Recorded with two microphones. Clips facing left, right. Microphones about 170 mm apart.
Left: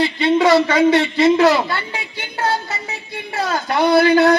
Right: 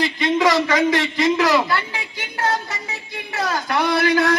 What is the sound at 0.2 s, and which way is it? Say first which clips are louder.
Speech: left 5 dB; 30° left (ahead or behind).